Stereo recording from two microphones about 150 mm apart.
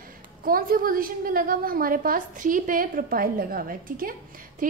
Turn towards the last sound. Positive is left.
turn(degrees=-65)  # may be behind; listen again after turning